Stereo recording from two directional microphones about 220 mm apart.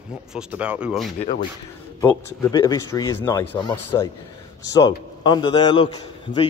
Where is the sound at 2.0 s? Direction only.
15° left (ahead or behind).